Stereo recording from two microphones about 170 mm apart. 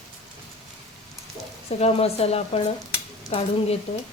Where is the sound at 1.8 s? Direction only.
40° left (ahead or behind).